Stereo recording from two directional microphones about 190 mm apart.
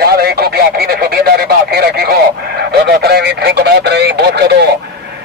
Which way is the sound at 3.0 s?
60° right (ahead or behind).